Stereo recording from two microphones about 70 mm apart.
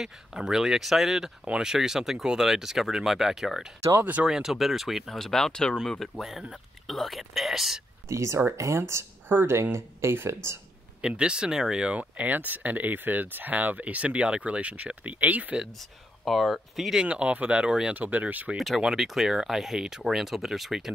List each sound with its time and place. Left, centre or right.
0.0 s speech: centre
4.0 s speech: right
4.3 s speech: centre
8.1 s speech: right
11.0 s speech: centre
16.3 s speech: centre
17.0 s speech: centre
17.9 s speech: right
18.8 s speech: centre